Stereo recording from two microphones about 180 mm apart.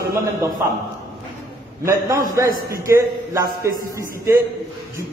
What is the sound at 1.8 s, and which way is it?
A man's voice, 15° right (ahead or behind).